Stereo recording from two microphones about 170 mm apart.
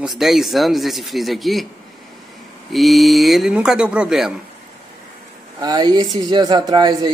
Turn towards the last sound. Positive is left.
turn(degrees=-25)  # may be behind; listen again after turning